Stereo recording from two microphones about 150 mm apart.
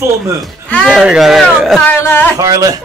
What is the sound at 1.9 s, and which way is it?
Speech, 15° left (ahead or behind).